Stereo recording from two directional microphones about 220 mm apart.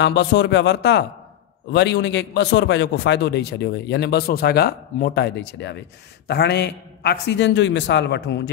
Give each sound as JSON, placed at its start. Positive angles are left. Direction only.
{"t": 0.0, "sound": "a man's voice", "side_deg": 50}